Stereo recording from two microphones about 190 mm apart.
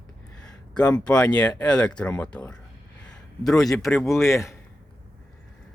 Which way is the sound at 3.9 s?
Centre (ahead or behind).